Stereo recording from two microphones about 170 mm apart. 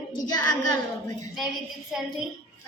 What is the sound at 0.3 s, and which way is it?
Speech, 25° left (ahead or behind).